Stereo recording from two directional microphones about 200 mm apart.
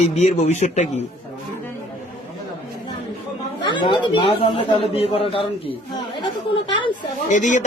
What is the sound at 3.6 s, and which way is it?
A man's voice, 25° left (ahead or behind).